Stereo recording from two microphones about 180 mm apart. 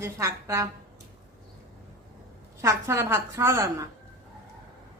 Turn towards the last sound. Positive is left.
turn(degrees=-15)  # may be behind; listen again after turning